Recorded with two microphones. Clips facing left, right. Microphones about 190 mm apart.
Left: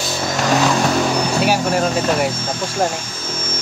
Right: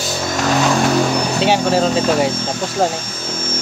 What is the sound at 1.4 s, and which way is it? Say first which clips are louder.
Speech: right 4 dB; 25° right (ahead or behind).